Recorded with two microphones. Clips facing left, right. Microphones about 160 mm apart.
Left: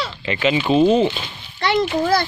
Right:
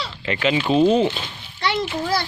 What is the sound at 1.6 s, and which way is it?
Speech, 50° left (ahead or behind).